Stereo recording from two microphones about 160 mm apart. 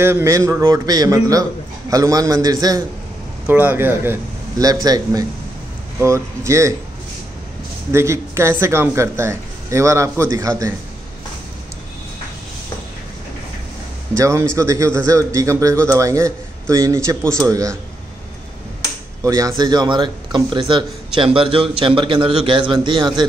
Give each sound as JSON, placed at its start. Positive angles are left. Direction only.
{"t": 0.0, "sound": "a man's voice", "side_deg": -15}
{"t": 3.4, "sound": "a man's voice", "side_deg": -10}
{"t": 7.9, "sound": "speech", "side_deg": -15}
{"t": 14.1, "sound": "a man's voice", "side_deg": -20}
{"t": 19.2, "sound": "a man's voice", "side_deg": -20}